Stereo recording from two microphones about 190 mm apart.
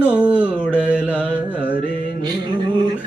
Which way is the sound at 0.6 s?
10° left (ahead or behind).